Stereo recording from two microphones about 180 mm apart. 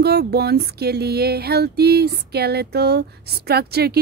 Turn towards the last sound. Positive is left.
turn(degrees=-60)  # may be behind; listen again after turning